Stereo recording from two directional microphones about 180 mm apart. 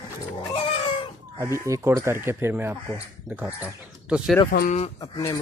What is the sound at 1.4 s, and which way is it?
Speech, 15° right (ahead or behind).